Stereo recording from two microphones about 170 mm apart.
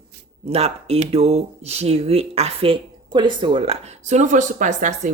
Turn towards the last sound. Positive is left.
turn(degrees=-45)  # may be behind; listen again after turning